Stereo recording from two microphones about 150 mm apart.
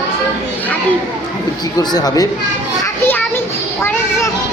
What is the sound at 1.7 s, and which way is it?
Speech, 25° left (ahead or behind).